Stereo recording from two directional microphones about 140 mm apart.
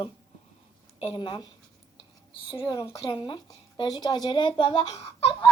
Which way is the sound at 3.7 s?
30° left (ahead or behind).